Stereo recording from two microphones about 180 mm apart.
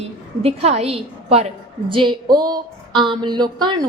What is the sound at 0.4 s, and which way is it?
A woman's voice, 35° right (ahead or behind).